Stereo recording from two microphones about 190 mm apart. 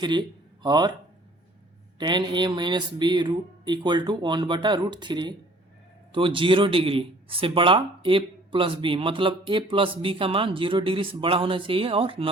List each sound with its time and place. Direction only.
0.0 s speech: 25° right (ahead or behind)
2.0 s speech: 25° right (ahead or behind)